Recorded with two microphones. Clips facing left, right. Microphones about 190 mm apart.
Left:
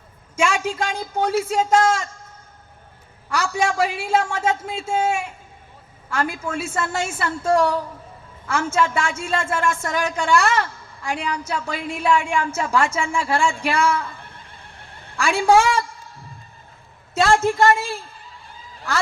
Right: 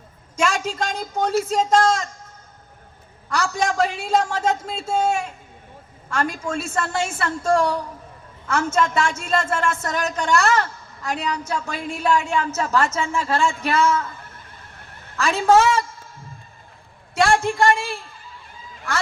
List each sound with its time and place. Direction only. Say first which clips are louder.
0.3 s a woman's voice: left 1 dB; 10° left (ahead or behind)
3.2 s a woman's voice: left 1 dB; 10° left (ahead or behind)
15.1 s a woman's voice: even; 10° left (ahead or behind)
17.2 s a woman's voice: left 1 dB; 20° left (ahead or behind)